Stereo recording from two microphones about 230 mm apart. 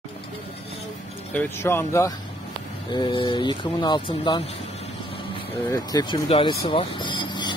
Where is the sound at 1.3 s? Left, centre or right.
Centre.